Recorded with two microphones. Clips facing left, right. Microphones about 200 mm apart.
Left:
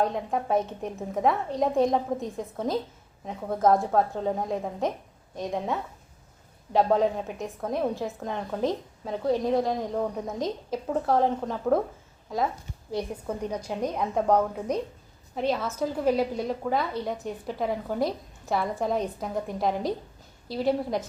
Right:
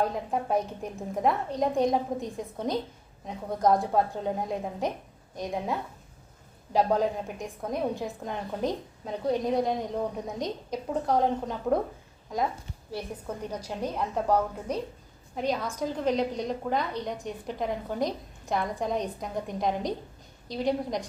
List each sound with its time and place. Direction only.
0.0 s a woman's voice: centre (ahead or behind)
12.9 s a woman's voice: 15° left (ahead or behind)
13.7 s a woman's voice: centre (ahead or behind)
15.4 s a woman's voice: 5° left (ahead or behind)